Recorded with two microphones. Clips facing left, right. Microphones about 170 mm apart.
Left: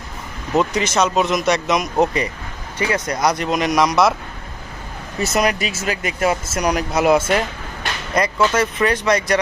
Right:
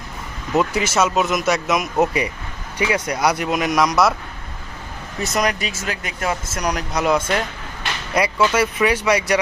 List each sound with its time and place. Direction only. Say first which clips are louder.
0.6 s speech: left 1 dB; 5° right (ahead or behind)
5.2 s speech: left 2 dB; 5° left (ahead or behind)
8.1 s speech: even; 10° right (ahead or behind)